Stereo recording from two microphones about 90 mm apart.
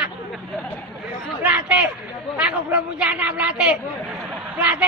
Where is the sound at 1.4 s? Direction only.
15° right (ahead or behind).